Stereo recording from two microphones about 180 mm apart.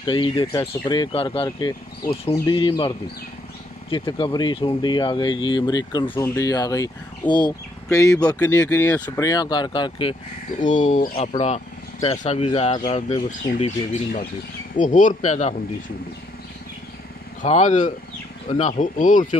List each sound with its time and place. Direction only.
0.0 s speech: 25° left (ahead or behind)
3.9 s speech: 30° left (ahead or behind)
10.6 s speech: 45° left (ahead or behind)
11.1 s speech: 35° left (ahead or behind)
13.5 s speech: 40° left (ahead or behind)
14.8 s speech: 45° left (ahead or behind)
17.4 s speech: 40° left (ahead or behind)